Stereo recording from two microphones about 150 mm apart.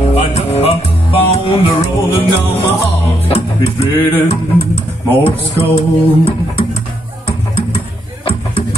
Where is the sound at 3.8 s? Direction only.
40° left (ahead or behind).